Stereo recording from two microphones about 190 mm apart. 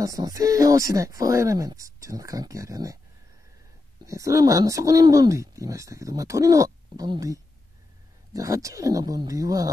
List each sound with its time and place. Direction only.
0.0 s speech: 20° right (ahead or behind)
4.0 s speech: 15° right (ahead or behind)